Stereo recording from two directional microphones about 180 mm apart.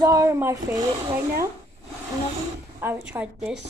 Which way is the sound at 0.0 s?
15° right (ahead or behind).